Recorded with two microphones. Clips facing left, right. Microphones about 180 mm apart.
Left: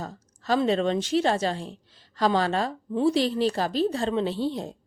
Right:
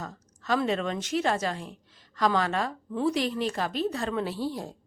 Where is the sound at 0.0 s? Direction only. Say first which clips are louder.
Left 3 dB; 30° left (ahead or behind).